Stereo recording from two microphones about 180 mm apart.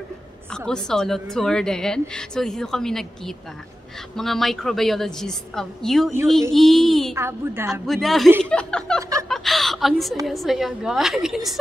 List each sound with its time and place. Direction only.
0.7 s a woman's voice: 5° left (ahead or behind)
7.2 s a woman's voice: 15° right (ahead or behind)
7.8 s a woman's voice: centre (ahead or behind)